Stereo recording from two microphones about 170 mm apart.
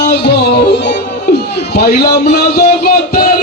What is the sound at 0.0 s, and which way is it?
Music, 75° left (ahead or behind).